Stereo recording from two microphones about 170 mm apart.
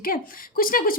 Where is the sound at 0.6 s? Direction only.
55° left (ahead or behind).